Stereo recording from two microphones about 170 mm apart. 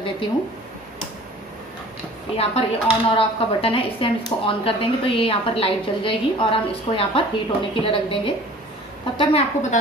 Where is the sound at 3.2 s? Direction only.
35° left (ahead or behind).